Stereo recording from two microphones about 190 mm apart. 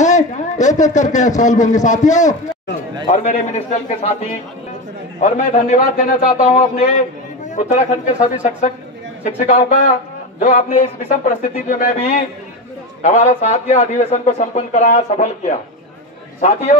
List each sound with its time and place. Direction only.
0.0 s a man's voice: 40° left (ahead or behind)
5.2 s a man's voice: 40° left (ahead or behind)